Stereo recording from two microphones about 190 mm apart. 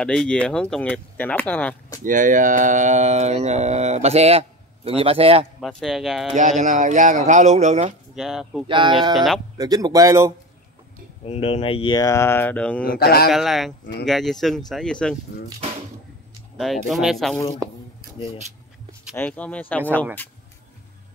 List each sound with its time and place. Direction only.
0.0 s speech: 5° left (ahead or behind)
2.0 s speech: 45° right (ahead or behind)
5.6 s speech: centre (ahead or behind)
6.6 s speech: 40° right (ahead or behind)
8.2 s speech: centre (ahead or behind)
8.6 s speech: 25° right (ahead or behind)
9.1 s speech: centre (ahead or behind)
9.6 s speech: 20° right (ahead or behind)
11.2 s speech: 30° left (ahead or behind); by 12.8 s 5° left (ahead or behind)
12.8 s a man's voice: 50° left (ahead or behind)
13.3 s speech: centre (ahead or behind)
16.5 s speech: centre (ahead or behind)
17.6 s a sound: 15° right (ahead or behind)
19.1 s speech: 10° left (ahead or behind)